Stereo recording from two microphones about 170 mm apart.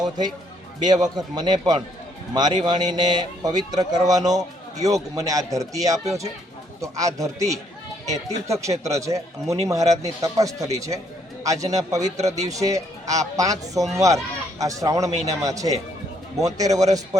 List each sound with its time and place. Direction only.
0.8 s a man's voice: 25° right (ahead or behind)
12.1 s speech: 40° right (ahead or behind)
12.5 s a man's voice: 20° right (ahead or behind)